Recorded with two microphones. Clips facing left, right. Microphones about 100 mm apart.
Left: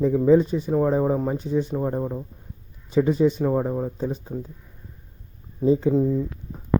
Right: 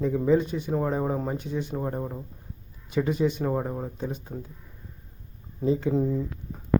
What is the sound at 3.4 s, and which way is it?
Speech, 5° left (ahead or behind).